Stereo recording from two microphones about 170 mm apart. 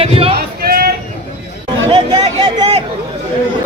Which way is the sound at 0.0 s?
35° right (ahead or behind).